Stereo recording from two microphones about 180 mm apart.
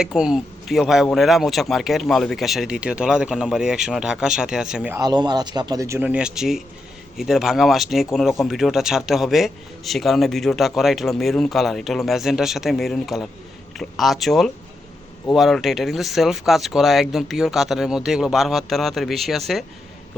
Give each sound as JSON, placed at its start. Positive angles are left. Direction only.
{"t": 0.0, "sound": "speech", "side_deg": -5}
{"t": 4.9, "sound": "speech", "side_deg": -20}